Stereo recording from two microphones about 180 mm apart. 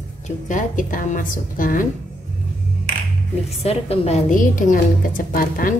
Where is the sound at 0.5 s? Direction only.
45° left (ahead or behind).